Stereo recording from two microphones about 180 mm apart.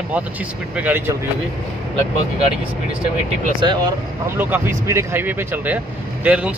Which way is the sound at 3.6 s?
25° right (ahead or behind).